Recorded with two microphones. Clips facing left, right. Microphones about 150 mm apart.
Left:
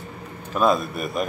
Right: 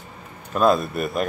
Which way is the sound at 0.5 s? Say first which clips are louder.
Right 2 dB; centre (ahead or behind).